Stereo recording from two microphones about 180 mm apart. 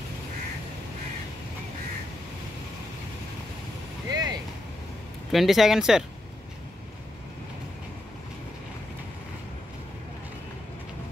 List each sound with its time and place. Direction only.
4.1 s vehicle: 20° right (ahead or behind)
5.3 s speech: centre (ahead or behind)